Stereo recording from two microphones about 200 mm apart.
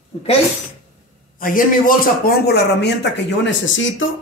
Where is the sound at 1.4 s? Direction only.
45° left (ahead or behind).